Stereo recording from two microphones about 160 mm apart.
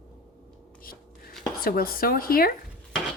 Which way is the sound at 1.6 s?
65° left (ahead or behind).